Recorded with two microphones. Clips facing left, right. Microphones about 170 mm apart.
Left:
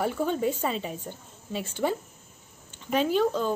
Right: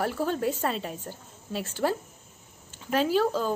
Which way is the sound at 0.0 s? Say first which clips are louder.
Left 1 dB; centre (ahead or behind).